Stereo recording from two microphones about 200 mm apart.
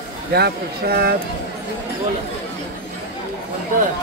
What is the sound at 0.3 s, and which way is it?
Speech, 50° right (ahead or behind).